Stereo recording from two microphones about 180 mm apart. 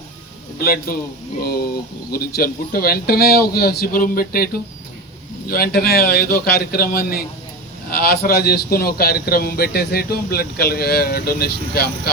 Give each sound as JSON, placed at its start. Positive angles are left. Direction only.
{"t": 0.6, "sound": "a man's voice", "side_deg": 60}
{"t": 5.5, "sound": "a man's voice", "side_deg": 60}